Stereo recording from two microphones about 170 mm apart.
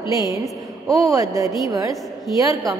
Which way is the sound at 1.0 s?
20° right (ahead or behind).